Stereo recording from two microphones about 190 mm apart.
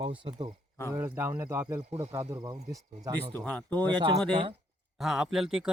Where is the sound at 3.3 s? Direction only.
10° left (ahead or behind).